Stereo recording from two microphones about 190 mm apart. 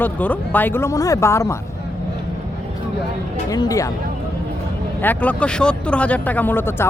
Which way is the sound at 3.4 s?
20° left (ahead or behind).